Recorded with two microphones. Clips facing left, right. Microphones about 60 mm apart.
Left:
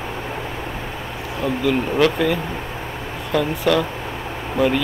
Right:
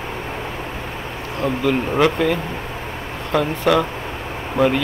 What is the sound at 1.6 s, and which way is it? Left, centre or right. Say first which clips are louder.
Speech: even; centre.